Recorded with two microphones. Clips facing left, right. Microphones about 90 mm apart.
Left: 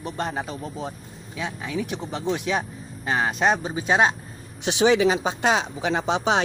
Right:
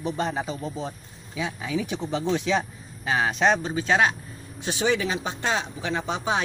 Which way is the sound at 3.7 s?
20° left (ahead or behind).